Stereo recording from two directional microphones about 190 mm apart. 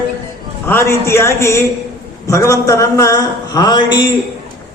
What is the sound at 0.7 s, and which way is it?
A man's voice, 15° left (ahead or behind).